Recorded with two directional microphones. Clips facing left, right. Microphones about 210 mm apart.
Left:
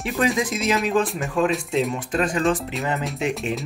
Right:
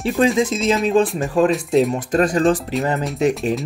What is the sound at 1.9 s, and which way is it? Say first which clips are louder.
Speech: right 6 dB; 40° right (ahead or behind).